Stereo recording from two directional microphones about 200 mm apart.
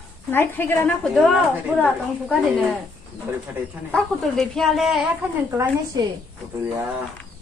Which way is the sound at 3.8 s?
5° left (ahead or behind).